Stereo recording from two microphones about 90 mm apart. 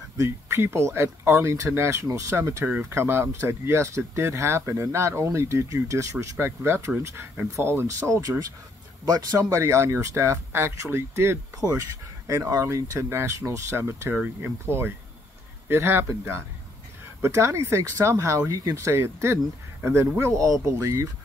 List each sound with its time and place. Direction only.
0.2 s speech: 30° right (ahead or behind)
8.1 s speech: 45° right (ahead or behind)
9.4 s speech: 30° right (ahead or behind)
11.6 s speech: 30° left (ahead or behind)
12.3 s speech: 40° right (ahead or behind)
12.6 s speech: 30° right (ahead or behind)